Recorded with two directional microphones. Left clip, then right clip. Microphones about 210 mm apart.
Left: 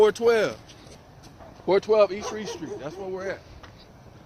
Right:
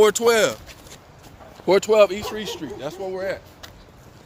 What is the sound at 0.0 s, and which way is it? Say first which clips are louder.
Speech: right 3 dB; 65° right (ahead or behind).